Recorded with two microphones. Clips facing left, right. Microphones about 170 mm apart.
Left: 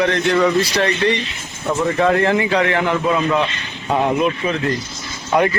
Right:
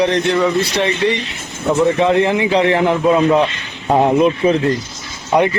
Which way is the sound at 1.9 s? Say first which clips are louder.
Right 2 dB; 20° right (ahead or behind).